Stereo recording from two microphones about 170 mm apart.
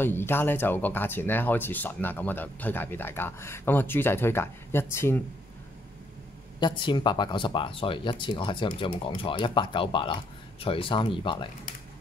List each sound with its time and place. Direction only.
0.0 s speech: 10° left (ahead or behind)
6.6 s speech: 25° left (ahead or behind)